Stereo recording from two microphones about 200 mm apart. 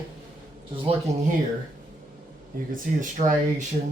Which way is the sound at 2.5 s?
45° right (ahead or behind).